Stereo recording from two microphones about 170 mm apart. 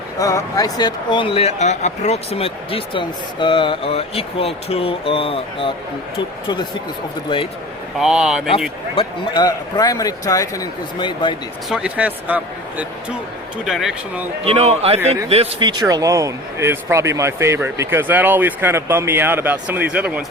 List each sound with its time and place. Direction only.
0.2 s speech: 20° left (ahead or behind)
7.9 s speech: 5° right (ahead or behind)
9.0 s speech: 25° left (ahead or behind)
11.7 s speech: 5° right (ahead or behind)
14.4 s a man's voice: 35° right (ahead or behind); by 20.2 s 5° right (ahead or behind)